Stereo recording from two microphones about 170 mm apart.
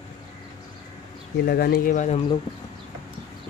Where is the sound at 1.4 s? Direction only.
65° left (ahead or behind); by 2.2 s 45° left (ahead or behind).